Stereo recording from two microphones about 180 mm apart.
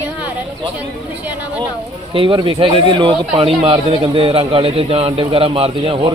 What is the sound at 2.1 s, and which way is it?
Speech, 30° right (ahead or behind).